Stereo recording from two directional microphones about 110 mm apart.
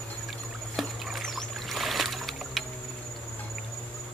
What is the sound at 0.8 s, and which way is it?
Rowboat, centre (ahead or behind).